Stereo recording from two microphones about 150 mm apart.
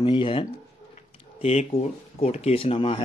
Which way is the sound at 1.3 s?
45° left (ahead or behind).